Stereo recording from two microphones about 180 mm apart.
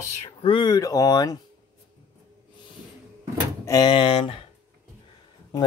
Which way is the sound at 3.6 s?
20° left (ahead or behind).